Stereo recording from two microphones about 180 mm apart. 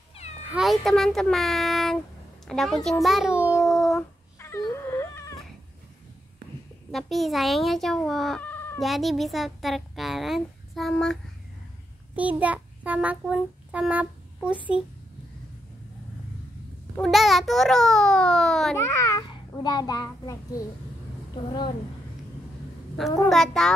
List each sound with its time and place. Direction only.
0.5 s a child's voice: centre (ahead or behind)
3.6 s a sound: centre (ahead or behind)
4.4 s dog: 15° left (ahead or behind)
6.9 s speech: centre (ahead or behind)
12.2 s child singing: 10° right (ahead or behind)
17.0 s a child's voice: centre (ahead or behind)
18.8 s a child's voice: 15° left (ahead or behind)
23.2 s a child's voice: centre (ahead or behind)